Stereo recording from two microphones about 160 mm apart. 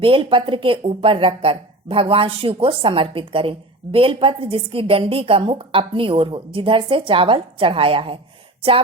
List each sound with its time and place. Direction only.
0.0 s a woman's voice: 35° right (ahead or behind)